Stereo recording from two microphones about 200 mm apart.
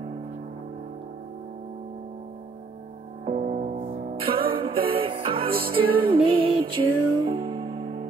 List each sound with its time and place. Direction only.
3.3 s music: 35° right (ahead or behind)
4.4 s music: 50° right (ahead or behind)
4.9 s music: 25° right (ahead or behind)
5.5 s music: 50° right (ahead or behind)
6.1 s music: 25° right (ahead or behind)